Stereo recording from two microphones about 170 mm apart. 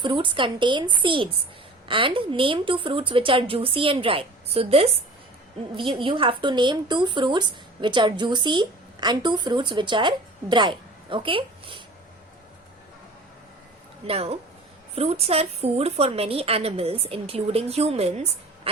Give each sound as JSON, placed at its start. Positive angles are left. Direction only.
{"t": 0.0, "sound": "a woman's voice", "side_deg": -30}
{"t": 14.1, "sound": "a woman's voice", "side_deg": -35}